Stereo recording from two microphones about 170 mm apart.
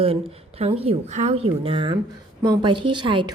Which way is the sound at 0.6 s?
35° right (ahead or behind).